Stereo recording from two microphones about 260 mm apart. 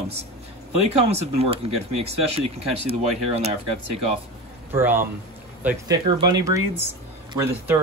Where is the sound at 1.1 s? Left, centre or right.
Right.